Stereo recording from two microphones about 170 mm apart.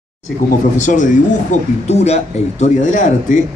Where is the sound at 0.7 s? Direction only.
45° left (ahead or behind).